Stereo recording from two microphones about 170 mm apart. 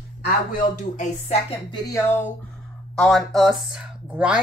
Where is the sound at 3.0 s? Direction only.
Centre (ahead or behind).